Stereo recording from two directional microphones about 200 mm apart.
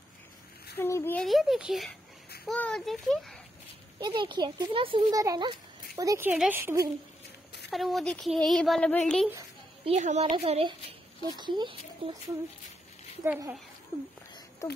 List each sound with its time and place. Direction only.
0.7 s speech: 10° left (ahead or behind)
4.0 s speech: 25° right (ahead or behind)
7.7 s speech: centre (ahead or behind)
9.8 s a woman's voice: 35° right (ahead or behind)
13.2 s speech: 10° right (ahead or behind)